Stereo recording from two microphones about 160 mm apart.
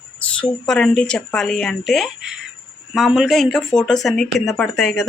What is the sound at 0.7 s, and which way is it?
Speech, 5° left (ahead or behind).